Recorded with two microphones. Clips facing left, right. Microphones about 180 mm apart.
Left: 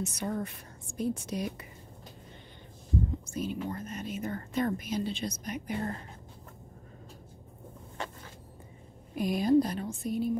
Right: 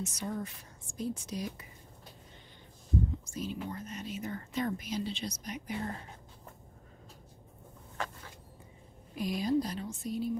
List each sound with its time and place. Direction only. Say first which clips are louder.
0.0 s a woman's voice: left 3 dB; 60° left (ahead or behind)
3.3 s speech: left 4 dB; 55° left (ahead or behind)
9.1 s speech: left 6 dB; 55° left (ahead or behind)